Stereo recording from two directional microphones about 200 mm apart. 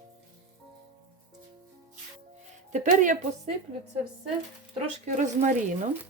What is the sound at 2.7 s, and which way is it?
Speech, 40° right (ahead or behind).